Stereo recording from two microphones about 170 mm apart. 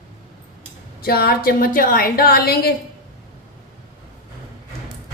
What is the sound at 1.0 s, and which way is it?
A woman's voice, 60° left (ahead or behind).